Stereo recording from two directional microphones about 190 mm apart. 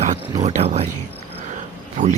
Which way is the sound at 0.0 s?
40° right (ahead or behind).